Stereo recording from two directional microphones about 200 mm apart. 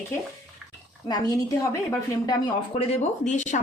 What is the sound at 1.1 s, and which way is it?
A woman's voice, 20° left (ahead or behind).